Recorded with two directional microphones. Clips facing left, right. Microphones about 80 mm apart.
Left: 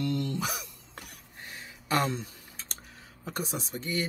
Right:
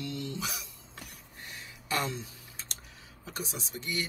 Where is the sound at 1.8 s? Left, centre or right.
Left.